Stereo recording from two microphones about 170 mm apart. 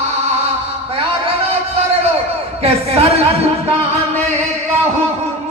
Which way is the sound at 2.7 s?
35° right (ahead or behind).